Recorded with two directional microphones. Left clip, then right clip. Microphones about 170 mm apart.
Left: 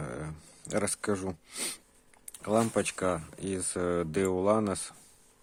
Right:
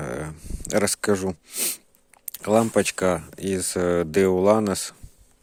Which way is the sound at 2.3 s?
45° right (ahead or behind).